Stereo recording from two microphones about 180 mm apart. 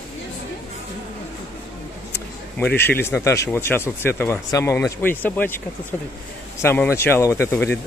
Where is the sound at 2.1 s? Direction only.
10° left (ahead or behind).